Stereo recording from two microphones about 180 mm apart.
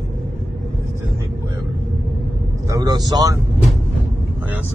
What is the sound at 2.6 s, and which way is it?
Speech, 20° right (ahead or behind).